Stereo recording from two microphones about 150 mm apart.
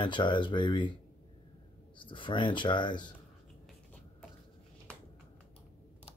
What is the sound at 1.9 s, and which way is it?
Speech, 35° left (ahead or behind).